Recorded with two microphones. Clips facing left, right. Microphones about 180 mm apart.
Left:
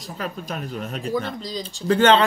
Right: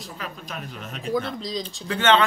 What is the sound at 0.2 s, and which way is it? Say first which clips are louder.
Speech: left 7 dB; 45° left (ahead or behind).